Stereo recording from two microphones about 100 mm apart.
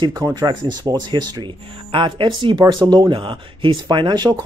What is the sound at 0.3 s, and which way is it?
Speech, 45° right (ahead or behind).